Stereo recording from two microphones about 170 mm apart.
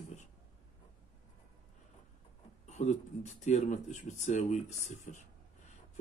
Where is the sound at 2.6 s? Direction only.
45° left (ahead or behind).